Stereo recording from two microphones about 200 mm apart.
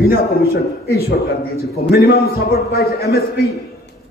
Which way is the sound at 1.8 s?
50° left (ahead or behind).